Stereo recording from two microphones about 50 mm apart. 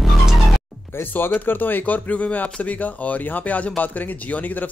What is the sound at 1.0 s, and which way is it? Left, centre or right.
Speech, left.